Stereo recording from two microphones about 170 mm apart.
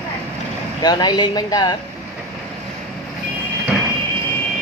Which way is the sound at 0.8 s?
25° left (ahead or behind).